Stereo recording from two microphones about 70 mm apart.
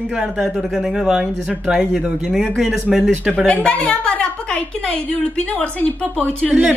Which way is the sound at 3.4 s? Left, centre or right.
Centre.